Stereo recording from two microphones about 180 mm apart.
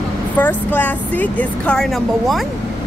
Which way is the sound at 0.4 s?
10° left (ahead or behind).